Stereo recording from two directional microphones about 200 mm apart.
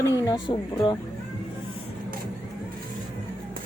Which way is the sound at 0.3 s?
25° left (ahead or behind).